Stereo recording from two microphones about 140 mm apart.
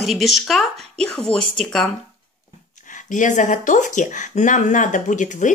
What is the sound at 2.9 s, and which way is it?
Speech, 65° left (ahead or behind).